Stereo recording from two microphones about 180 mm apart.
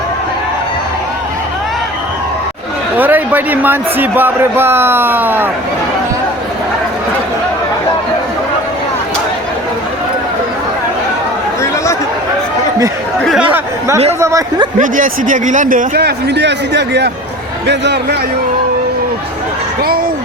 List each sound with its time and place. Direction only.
3.0 s a man's voice: 10° right (ahead or behind)
13.5 s chatter: 15° right (ahead or behind)
14.2 s a man's voice: 15° right (ahead or behind)
14.8 s a man's voice: 50° right (ahead or behind); by 18.2 s 70° right (ahead or behind)